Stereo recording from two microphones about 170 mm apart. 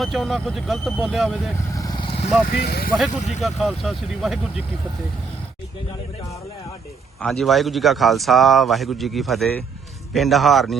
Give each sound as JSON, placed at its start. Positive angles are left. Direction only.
{"t": 0.0, "sound": "a man's voice", "side_deg": 0}
{"t": 1.7, "sound": "vehicle", "side_deg": 20}
{"t": 2.6, "sound": "speech", "side_deg": 65}
{"t": 3.1, "sound": "speech", "side_deg": 45}
{"t": 3.4, "sound": "a man's voice", "side_deg": 0}
{"t": 7.2, "sound": "a man's voice", "side_deg": 0}